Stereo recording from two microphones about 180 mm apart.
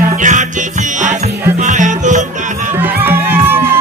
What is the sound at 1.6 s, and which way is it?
Music, 45° right (ahead or behind).